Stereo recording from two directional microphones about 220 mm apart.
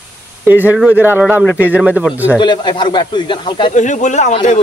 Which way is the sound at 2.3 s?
20° left (ahead or behind).